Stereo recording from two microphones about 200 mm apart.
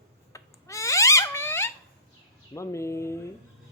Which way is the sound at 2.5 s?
15° left (ahead or behind).